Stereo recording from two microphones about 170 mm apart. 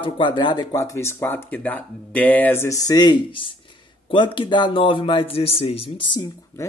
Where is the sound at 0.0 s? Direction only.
30° left (ahead or behind).